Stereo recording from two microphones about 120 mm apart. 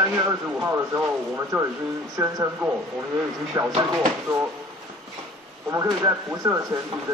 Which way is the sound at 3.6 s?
30° right (ahead or behind).